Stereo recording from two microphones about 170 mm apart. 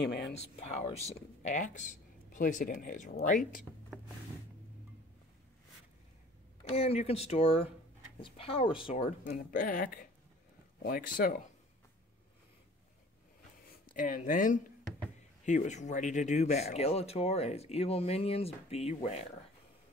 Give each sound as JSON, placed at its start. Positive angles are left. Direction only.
{"t": 0.0, "sound": "speech", "side_deg": 75}
{"t": 0.3, "sound": "speech", "side_deg": 40}
{"t": 6.6, "sound": "speech", "side_deg": 35}
{"t": 9.3, "sound": "speech", "side_deg": 55}
{"t": 13.9, "sound": "speech", "side_deg": 55}